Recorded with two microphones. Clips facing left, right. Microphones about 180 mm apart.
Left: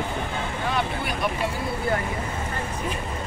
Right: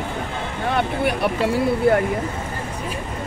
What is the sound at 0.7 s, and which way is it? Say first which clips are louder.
Speech: right 10 dB; 65° right (ahead or behind).